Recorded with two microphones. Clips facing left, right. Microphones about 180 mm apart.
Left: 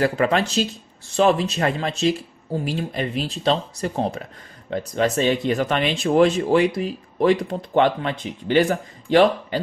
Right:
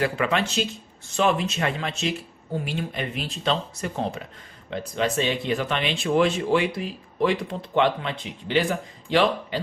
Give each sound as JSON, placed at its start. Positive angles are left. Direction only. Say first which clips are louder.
{"t": 0.0, "sound": "speech", "louder": "left 4 dB", "side_deg": 40}